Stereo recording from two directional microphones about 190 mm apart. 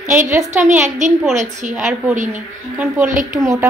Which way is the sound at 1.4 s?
40° right (ahead or behind).